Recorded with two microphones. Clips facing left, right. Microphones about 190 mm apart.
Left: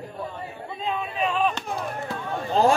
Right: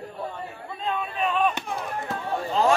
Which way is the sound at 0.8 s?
Centre (ahead or behind).